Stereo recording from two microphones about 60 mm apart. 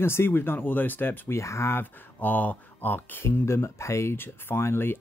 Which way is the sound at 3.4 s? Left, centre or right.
Left.